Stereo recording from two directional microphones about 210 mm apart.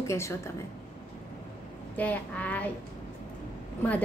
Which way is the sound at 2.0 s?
5° left (ahead or behind).